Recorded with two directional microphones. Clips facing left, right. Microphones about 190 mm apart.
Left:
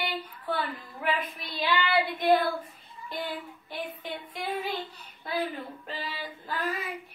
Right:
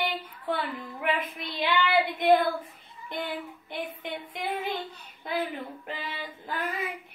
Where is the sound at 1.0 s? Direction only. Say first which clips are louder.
Right 1 dB; 20° right (ahead or behind).